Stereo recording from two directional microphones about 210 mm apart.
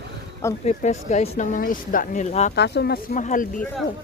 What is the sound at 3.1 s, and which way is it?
Speech, 35° left (ahead or behind).